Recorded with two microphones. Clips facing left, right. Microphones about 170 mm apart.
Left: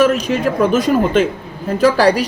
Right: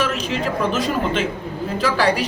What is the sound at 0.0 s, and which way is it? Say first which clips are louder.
A woman's voice: left 8 dB; 50° left (ahead or behind).